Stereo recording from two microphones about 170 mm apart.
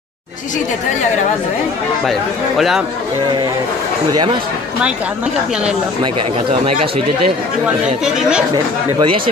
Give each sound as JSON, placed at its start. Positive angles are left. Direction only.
{"t": 2.0, "sound": "speech", "side_deg": 0}
{"t": 7.6, "sound": "speech", "side_deg": -5}
{"t": 9.0, "sound": "speech", "side_deg": -30}